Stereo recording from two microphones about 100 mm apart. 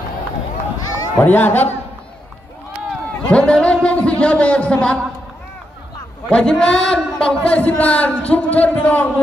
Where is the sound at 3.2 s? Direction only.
10° left (ahead or behind).